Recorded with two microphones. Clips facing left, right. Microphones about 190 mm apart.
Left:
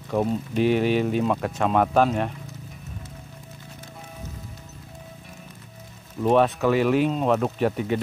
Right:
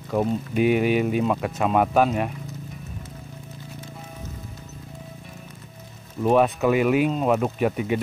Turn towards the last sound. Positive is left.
turn(degrees=-5)  # may be behind; listen again after turning